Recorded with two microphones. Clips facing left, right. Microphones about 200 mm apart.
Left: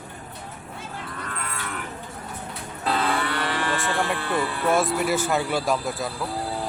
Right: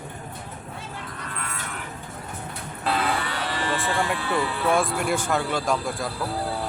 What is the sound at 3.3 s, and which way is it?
Cattle, 60° left (ahead or behind).